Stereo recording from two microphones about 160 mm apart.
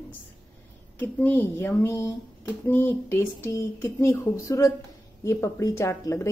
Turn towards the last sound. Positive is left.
turn(degrees=20)  # may be behind; listen again after turning